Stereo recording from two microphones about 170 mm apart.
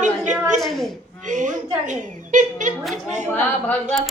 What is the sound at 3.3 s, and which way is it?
Speech, 10° left (ahead or behind).